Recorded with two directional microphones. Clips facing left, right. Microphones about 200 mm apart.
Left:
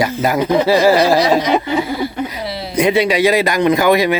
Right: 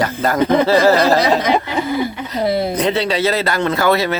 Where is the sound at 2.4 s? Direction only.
50° right (ahead or behind).